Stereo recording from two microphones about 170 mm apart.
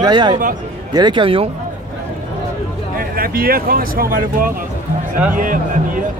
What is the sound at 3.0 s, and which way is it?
Speech, 60° right (ahead or behind).